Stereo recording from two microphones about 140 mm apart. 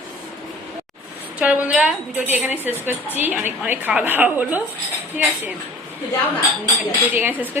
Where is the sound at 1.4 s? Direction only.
10° right (ahead or behind).